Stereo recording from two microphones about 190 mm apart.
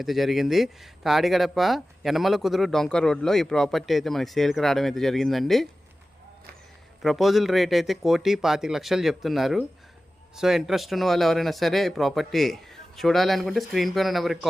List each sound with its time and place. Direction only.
0.0 s speech: centre (ahead or behind)
7.0 s speech: centre (ahead or behind)